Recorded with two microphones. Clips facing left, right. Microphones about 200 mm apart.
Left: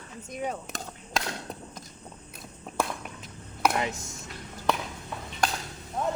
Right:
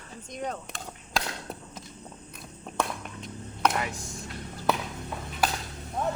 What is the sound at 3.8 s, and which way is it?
Speech, 20° left (ahead or behind).